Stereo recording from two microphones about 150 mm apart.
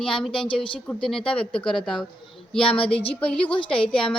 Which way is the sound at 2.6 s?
40° left (ahead or behind).